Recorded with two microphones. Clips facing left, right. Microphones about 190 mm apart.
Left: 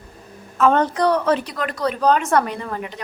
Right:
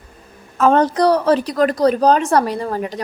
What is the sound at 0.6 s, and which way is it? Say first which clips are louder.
A woman's voice: right 3 dB; 35° right (ahead or behind).